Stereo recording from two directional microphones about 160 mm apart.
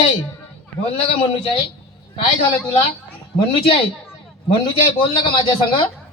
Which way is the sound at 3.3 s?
35° left (ahead or behind).